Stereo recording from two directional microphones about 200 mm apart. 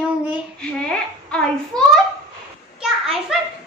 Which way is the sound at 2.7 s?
Centre (ahead or behind).